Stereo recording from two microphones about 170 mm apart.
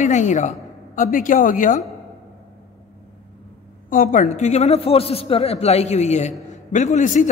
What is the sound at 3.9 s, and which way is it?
A man's voice, 50° left (ahead or behind).